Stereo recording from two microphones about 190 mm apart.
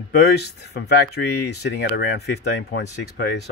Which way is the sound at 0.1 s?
60° left (ahead or behind).